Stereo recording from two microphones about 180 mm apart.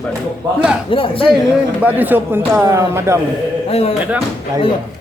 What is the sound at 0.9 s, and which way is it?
Speech, 30° left (ahead or behind).